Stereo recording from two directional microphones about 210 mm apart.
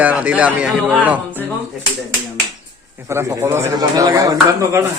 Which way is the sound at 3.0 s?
15° right (ahead or behind).